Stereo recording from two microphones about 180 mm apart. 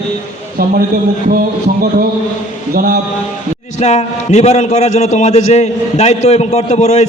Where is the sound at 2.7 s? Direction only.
55° right (ahead or behind).